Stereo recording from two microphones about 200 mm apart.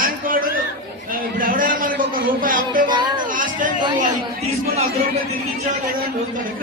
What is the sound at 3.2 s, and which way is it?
Speech, 40° right (ahead or behind).